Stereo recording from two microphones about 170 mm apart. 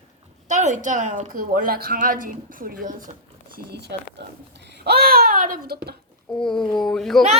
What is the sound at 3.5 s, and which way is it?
Speech, 80° right.